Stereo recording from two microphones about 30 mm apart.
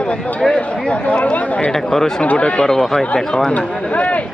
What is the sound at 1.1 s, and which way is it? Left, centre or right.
Speech, left.